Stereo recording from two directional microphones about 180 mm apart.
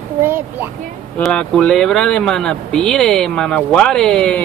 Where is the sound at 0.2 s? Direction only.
10° right (ahead or behind).